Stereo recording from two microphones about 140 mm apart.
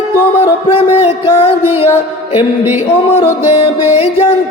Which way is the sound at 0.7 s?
45° left (ahead or behind).